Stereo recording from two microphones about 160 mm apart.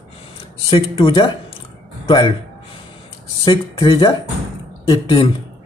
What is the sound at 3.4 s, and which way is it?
Speech, 30° left (ahead or behind).